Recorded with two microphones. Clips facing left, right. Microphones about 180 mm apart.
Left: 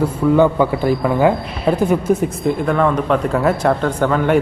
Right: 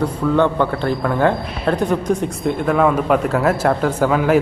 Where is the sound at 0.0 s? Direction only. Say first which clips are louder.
Left 3 dB; 10° left (ahead or behind).